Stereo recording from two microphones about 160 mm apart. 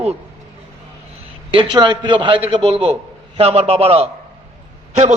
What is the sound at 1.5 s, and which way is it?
A man's voice, 30° right (ahead or behind).